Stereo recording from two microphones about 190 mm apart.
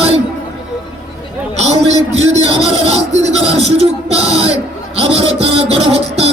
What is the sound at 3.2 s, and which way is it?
Speech, 35° right (ahead or behind).